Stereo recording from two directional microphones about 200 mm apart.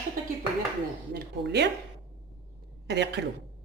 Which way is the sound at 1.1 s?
55° right (ahead or behind).